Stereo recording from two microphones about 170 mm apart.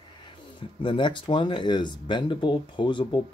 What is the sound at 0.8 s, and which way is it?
Speech, 30° left (ahead or behind).